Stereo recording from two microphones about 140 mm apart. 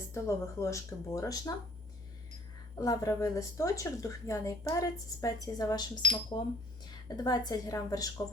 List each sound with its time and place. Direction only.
0.1 s a woman's voice: 20° left (ahead or behind)
2.7 s a woman's voice: 25° left (ahead or behind)